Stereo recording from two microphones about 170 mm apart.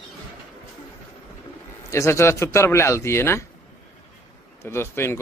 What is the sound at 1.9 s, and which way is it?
Speech, 15° left (ahead or behind).